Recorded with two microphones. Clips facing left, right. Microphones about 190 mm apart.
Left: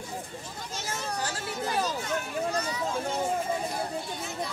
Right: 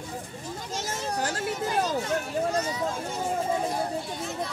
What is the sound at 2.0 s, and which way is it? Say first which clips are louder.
Speech: right 4 dB; 35° right (ahead or behind).